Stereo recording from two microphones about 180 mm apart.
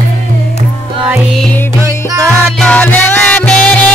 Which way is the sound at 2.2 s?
5° left (ahead or behind).